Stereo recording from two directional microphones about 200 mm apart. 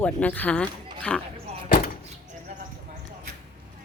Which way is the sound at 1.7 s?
45° left (ahead or behind).